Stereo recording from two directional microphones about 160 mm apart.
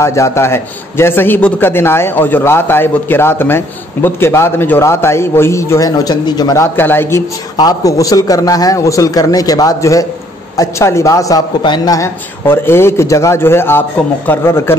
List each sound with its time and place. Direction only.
0.0 s a man's voice: 20° left (ahead or behind)